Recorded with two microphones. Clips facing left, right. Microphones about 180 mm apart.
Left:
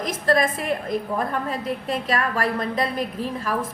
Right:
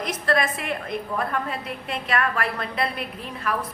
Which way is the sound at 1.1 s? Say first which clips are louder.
Left 2 dB; 35° left (ahead or behind).